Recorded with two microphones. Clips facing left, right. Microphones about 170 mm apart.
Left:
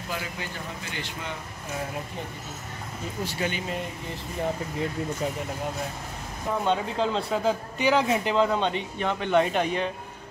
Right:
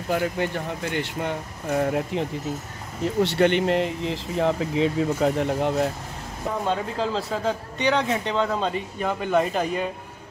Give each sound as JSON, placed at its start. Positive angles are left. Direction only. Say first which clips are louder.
{"t": 0.1, "sound": "speech", "louder": "right 11 dB", "side_deg": -60}
{"t": 6.6, "sound": "speech", "louder": "even", "side_deg": 0}